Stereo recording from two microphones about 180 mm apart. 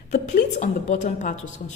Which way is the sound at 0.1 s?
45° left (ahead or behind).